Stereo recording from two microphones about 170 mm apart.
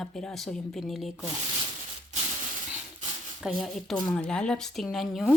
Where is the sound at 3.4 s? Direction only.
Centre (ahead or behind).